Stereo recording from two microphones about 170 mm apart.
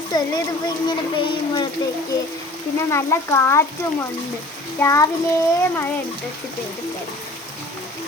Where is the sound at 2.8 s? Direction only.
15° left (ahead or behind).